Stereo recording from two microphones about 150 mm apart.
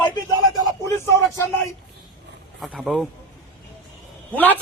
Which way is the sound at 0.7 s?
20° left (ahead or behind).